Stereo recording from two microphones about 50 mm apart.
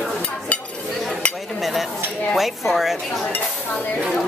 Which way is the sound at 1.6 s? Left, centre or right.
Centre.